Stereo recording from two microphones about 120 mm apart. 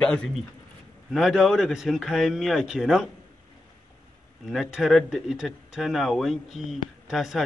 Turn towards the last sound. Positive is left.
turn(degrees=0)  # may be behind; listen again after turning